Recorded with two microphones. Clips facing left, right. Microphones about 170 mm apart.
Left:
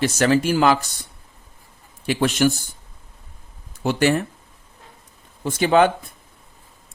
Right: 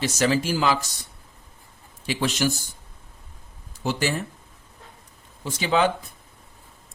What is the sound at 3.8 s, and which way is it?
Speech, 60° left (ahead or behind).